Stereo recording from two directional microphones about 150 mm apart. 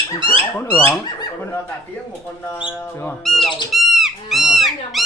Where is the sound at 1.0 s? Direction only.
25° left (ahead or behind).